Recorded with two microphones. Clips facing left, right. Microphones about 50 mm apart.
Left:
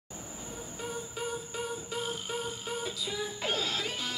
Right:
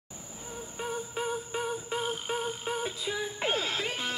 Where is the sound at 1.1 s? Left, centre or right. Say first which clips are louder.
Right 4 dB; right.